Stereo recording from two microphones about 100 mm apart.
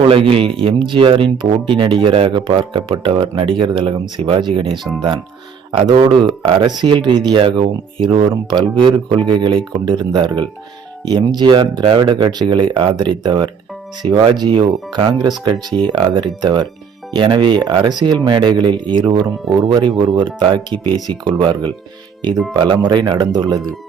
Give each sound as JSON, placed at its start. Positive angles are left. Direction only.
{"t": 0.0, "sound": "speech", "side_deg": -65}
{"t": 2.3, "sound": "speech", "side_deg": -50}
{"t": 4.8, "sound": "speech", "side_deg": 0}
{"t": 5.7, "sound": "speech", "side_deg": -60}
{"t": 8.4, "sound": "speech", "side_deg": -50}
{"t": 23.3, "sound": "speech", "side_deg": -40}